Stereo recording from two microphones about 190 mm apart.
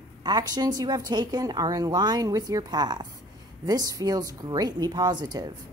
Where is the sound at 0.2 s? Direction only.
20° right (ahead or behind).